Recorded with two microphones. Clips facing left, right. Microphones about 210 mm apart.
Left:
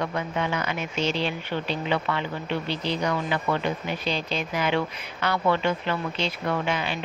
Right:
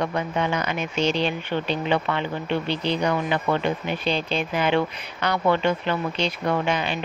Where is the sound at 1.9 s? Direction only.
25° right (ahead or behind).